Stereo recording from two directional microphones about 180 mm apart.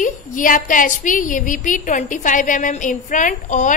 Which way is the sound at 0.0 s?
50° left (ahead or behind).